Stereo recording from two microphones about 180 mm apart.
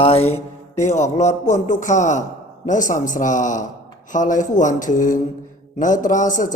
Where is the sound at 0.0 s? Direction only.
35° left (ahead or behind).